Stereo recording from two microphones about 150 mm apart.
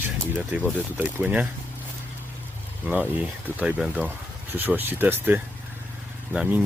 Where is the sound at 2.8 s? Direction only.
10° right (ahead or behind).